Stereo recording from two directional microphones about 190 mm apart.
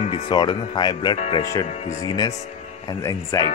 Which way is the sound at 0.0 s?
25° left (ahead or behind).